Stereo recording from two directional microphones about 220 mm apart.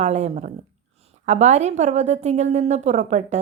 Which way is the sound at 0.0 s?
30° right (ahead or behind).